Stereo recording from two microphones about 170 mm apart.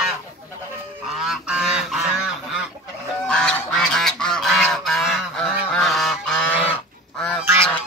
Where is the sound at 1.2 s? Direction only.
5° right (ahead or behind).